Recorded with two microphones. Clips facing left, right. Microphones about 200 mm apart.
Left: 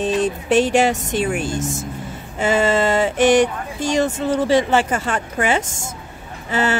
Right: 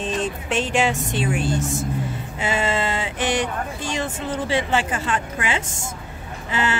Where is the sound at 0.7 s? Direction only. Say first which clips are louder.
Left 4 dB; 40° left (ahead or behind).